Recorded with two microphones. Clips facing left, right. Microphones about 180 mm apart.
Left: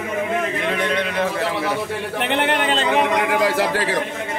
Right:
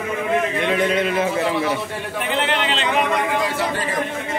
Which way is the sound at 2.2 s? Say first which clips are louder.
Left 2 dB; 65° left (ahead or behind).